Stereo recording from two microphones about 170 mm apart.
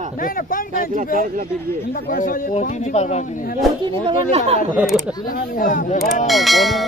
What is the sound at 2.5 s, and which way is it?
Speech, 45° left (ahead or behind).